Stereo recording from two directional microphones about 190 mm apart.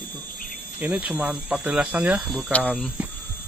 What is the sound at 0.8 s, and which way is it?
Speech, 10° right (ahead or behind).